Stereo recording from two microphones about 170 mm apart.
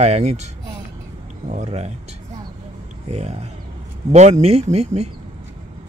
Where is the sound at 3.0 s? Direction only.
40° right (ahead or behind).